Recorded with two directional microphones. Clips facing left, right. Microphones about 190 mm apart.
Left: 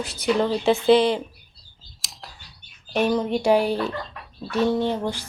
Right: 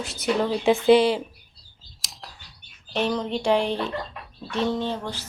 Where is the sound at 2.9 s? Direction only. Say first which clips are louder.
Left 4 dB; 10° left (ahead or behind).